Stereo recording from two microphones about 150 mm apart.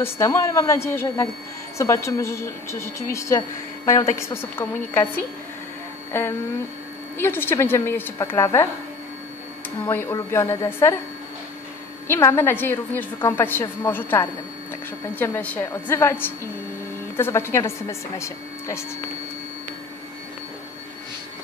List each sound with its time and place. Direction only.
0.0 s a woman's voice: 20° left (ahead or behind)
7.2 s a woman's voice: 15° left (ahead or behind)
9.8 s a woman's voice: 15° left (ahead or behind)
12.1 s a woman's voice: 15° left (ahead or behind)